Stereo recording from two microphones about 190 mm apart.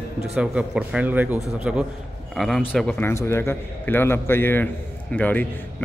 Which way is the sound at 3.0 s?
15° left (ahead or behind).